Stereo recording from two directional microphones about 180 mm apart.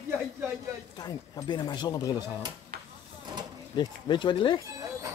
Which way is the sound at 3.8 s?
25° left (ahead or behind).